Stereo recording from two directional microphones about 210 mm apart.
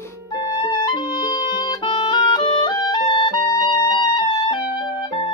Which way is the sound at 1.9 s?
20° left (ahead or behind).